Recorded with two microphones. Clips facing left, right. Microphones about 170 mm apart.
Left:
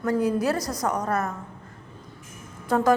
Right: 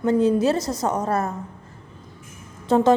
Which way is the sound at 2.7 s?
25° right (ahead or behind).